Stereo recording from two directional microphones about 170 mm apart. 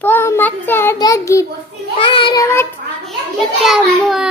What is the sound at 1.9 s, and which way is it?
Child singing, 30° left (ahead or behind).